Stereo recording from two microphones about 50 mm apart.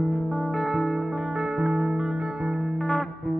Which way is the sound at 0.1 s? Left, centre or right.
Centre.